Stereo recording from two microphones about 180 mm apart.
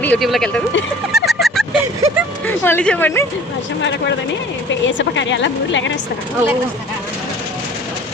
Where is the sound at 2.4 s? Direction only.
10° left (ahead or behind).